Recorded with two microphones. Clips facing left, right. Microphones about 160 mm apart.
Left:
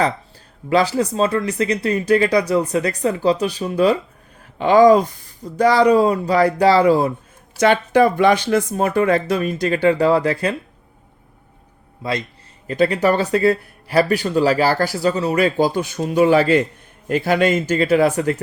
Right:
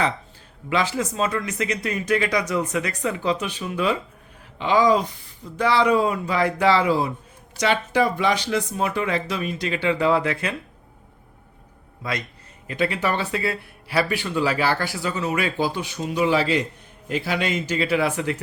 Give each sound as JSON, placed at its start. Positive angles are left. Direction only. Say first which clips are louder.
{"t": 0.7, "sound": "speech", "louder": "left 6 dB", "side_deg": 35}
{"t": 4.5, "sound": "speech", "louder": "left 7 dB", "side_deg": 50}
{"t": 12.6, "sound": "speech", "louder": "left 7 dB", "side_deg": 40}